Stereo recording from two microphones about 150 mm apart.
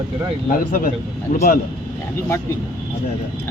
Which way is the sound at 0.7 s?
70° left (ahead or behind).